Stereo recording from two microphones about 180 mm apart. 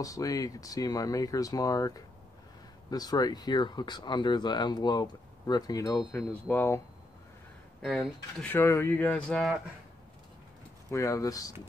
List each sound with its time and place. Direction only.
0.0 s speech: 20° left (ahead or behind)
7.8 s speech: centre (ahead or behind)
8.5 s speech: 10° left (ahead or behind)
10.9 s speech: 15° left (ahead or behind)